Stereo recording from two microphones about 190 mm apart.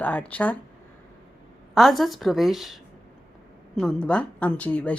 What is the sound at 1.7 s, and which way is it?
Speech, centre (ahead or behind).